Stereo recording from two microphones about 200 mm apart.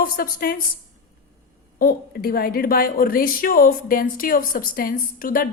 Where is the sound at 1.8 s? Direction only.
45° left (ahead or behind).